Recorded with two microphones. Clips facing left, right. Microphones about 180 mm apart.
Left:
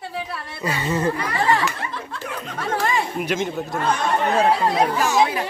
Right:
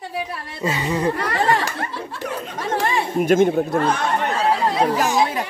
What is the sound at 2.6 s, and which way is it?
Speech, 20° right (ahead or behind).